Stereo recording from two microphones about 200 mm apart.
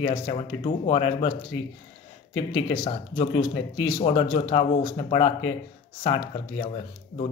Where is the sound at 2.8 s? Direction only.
30° left (ahead or behind).